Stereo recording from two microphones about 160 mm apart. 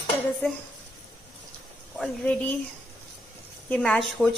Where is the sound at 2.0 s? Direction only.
5° left (ahead or behind).